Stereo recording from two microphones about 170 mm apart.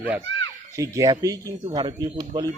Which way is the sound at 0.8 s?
20° right (ahead or behind).